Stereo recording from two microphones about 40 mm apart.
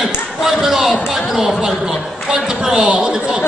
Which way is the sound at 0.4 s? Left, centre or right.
Centre.